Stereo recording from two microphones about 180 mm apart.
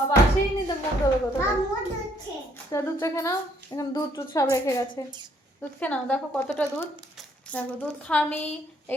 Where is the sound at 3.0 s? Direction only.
15° left (ahead or behind).